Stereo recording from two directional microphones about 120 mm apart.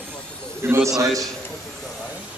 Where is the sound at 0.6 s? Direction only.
20° right (ahead or behind).